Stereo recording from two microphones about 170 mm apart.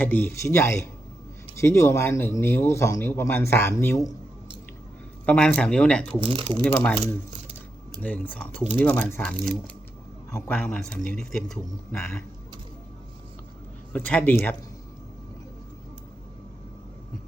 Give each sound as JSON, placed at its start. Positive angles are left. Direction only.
{"t": 0.0, "sound": "speech", "side_deg": 10}
{"t": 5.2, "sound": "speech", "side_deg": 10}
{"t": 6.1, "sound": "speech", "side_deg": -35}
{"t": 6.6, "sound": "speech", "side_deg": 10}
{"t": 8.0, "sound": "speech", "side_deg": 10}
{"t": 10.3, "sound": "speech", "side_deg": 10}
{"t": 11.9, "sound": "speech", "side_deg": 15}
{"t": 13.9, "sound": "speech", "side_deg": 10}